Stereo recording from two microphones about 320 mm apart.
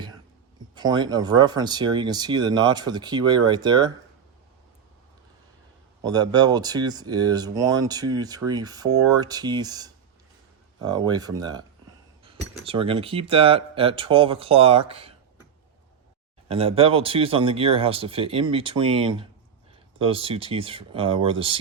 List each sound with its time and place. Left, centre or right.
0.8 s speech: centre
6.0 s speech: centre
12.6 s speech: centre
16.5 s speech: centre